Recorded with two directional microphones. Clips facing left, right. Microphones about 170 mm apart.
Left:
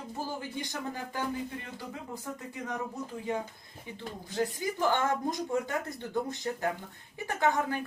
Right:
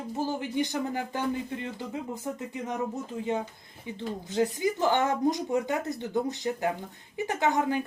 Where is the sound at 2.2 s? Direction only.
20° right (ahead or behind).